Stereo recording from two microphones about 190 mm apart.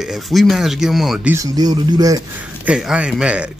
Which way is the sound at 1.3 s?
20° right (ahead or behind).